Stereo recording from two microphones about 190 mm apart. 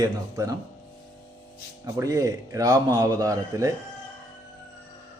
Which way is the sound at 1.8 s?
15° right (ahead or behind).